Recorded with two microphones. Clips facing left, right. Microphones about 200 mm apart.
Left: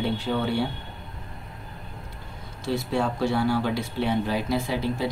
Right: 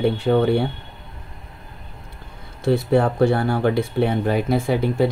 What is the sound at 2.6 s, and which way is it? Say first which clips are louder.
Speech: right 8 dB; 55° right (ahead or behind).